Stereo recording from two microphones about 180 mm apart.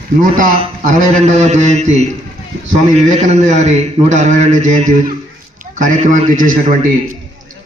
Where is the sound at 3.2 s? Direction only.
40° right (ahead or behind).